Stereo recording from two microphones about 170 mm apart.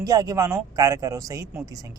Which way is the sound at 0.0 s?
20° right (ahead or behind).